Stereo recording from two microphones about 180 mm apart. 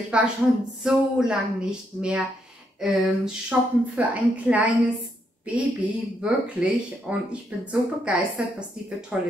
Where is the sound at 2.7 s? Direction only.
5° right (ahead or behind).